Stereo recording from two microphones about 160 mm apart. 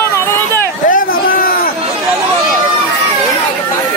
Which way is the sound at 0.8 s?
60° left (ahead or behind).